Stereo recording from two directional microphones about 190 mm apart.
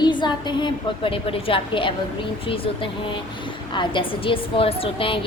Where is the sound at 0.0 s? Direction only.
25° left (ahead or behind).